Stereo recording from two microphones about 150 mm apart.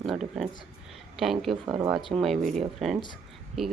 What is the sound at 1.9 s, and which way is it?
Speech, centre (ahead or behind).